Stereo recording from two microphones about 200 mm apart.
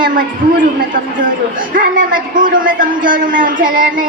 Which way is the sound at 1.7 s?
45° right (ahead or behind).